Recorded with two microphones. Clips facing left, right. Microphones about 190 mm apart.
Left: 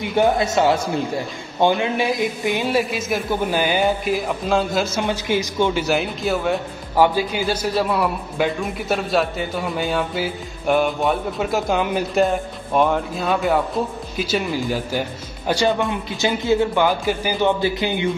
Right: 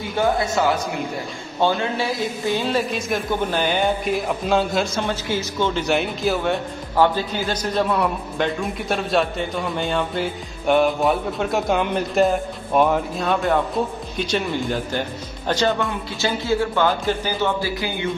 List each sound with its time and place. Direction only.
0.0 s a man's voice: 20° left (ahead or behind)
1.6 s a man's voice: 15° left (ahead or behind); by 5.0 s centre (ahead or behind)
5.0 s a man's voice: 15° left (ahead or behind)
7.0 s a man's voice: 10° left (ahead or behind)